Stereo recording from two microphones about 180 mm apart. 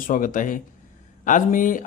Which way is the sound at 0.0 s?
50° left (ahead or behind).